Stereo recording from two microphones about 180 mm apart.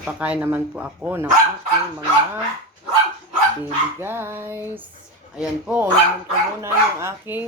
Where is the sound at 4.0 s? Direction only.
10° right (ahead or behind).